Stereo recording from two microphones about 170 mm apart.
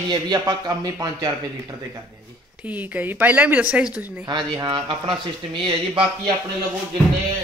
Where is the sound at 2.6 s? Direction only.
10° right (ahead or behind).